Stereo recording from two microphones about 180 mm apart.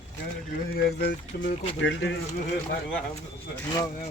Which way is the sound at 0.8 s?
60° left (ahead or behind).